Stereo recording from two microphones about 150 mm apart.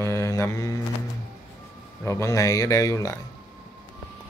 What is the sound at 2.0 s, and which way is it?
Speech, 20° left (ahead or behind).